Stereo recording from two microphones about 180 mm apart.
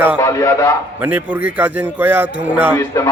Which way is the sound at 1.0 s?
10° right (ahead or behind).